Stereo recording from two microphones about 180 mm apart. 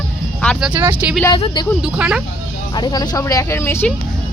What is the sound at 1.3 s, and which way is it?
Speech, 25° left (ahead or behind).